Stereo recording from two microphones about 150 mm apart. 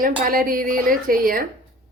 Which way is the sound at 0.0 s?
70° right (ahead or behind).